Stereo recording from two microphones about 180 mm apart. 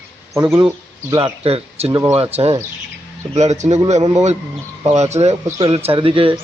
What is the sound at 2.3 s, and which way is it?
A man's voice, 35° right (ahead or behind).